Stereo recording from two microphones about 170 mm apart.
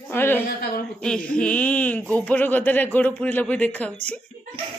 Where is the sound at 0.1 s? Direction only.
15° left (ahead or behind).